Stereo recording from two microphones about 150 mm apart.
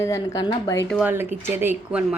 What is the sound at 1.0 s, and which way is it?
Speech, 15° right (ahead or behind).